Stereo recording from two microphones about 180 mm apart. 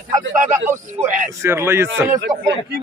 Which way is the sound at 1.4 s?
15° right (ahead or behind).